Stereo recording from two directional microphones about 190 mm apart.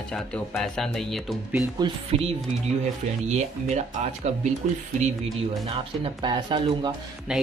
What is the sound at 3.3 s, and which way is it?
Speech, 35° right (ahead or behind).